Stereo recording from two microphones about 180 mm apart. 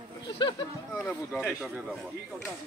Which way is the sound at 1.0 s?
5° left (ahead or behind).